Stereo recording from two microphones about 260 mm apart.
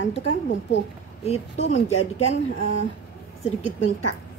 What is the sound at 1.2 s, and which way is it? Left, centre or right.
Speech, left.